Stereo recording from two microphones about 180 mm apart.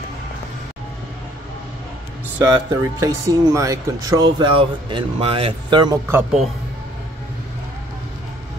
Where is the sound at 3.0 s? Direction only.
15° right (ahead or behind).